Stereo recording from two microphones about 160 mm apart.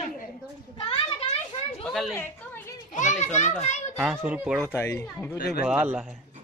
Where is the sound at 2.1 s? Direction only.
15° left (ahead or behind).